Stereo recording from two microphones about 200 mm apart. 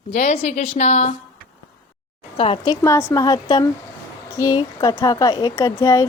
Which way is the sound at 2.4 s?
25° left (ahead or behind).